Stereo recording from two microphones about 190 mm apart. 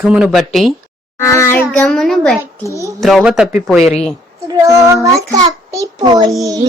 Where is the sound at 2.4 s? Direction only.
15° right (ahead or behind).